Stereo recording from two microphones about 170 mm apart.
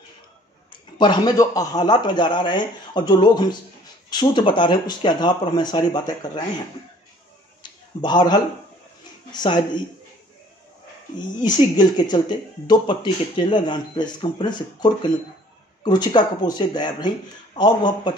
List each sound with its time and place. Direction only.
0.9 s speech: 25° left (ahead or behind)
8.0 s speech: 25° left (ahead or behind)
11.1 s speech: 25° left (ahead or behind)